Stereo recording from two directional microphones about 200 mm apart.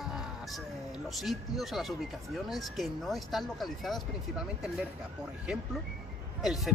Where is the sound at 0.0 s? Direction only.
Centre (ahead or behind).